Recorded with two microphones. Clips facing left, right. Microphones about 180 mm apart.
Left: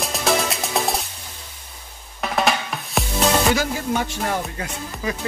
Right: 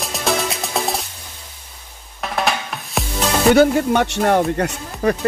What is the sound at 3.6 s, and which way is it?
Speech, 65° right (ahead or behind).